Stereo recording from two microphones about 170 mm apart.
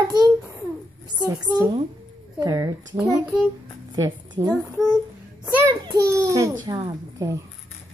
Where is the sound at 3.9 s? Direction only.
25° right (ahead or behind).